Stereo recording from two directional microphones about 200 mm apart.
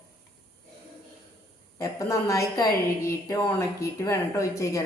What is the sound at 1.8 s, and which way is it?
A woman's voice, 15° left (ahead or behind).